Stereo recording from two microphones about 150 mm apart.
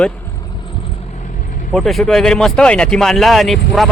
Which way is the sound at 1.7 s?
Centre (ahead or behind).